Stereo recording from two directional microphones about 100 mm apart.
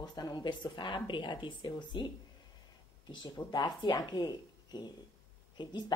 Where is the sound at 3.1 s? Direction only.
45° left (ahead or behind).